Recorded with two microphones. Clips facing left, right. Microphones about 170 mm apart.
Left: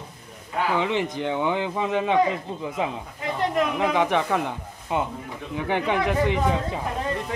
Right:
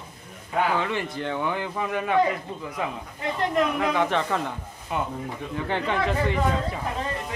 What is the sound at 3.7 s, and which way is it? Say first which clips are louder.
Speech: left 2 dB; 15° left (ahead or behind).